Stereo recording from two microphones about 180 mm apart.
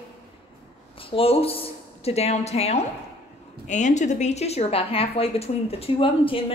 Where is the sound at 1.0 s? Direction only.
30° left (ahead or behind).